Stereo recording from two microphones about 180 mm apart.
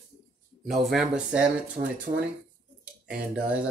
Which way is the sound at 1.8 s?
40° right (ahead or behind).